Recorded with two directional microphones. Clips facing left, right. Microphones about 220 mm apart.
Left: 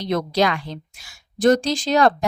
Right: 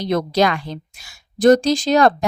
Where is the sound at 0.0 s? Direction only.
45° right (ahead or behind).